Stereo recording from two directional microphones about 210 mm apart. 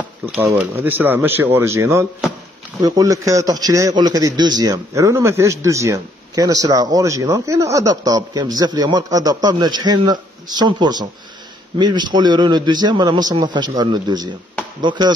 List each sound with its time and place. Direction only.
0.4 s a man's voice: 10° right (ahead or behind)